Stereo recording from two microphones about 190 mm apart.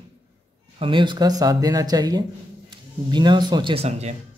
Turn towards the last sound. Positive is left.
turn(degrees=-35)  # may be behind; listen again after turning